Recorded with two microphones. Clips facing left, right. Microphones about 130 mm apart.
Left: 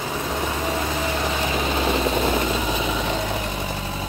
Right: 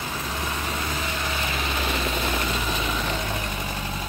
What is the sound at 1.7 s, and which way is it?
Vehicle, 30° left (ahead or behind).